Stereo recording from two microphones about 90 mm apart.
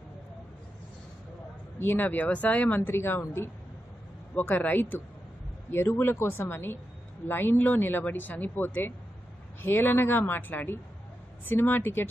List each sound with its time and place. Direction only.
1.8 s speech: 20° left (ahead or behind)